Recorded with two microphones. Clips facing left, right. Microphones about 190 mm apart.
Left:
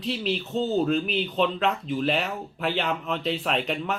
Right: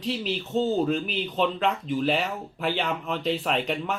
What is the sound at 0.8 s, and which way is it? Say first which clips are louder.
Speech: left 2 dB; 5° right (ahead or behind).